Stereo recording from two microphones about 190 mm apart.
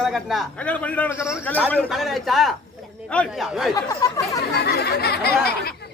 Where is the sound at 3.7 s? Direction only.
20° left (ahead or behind).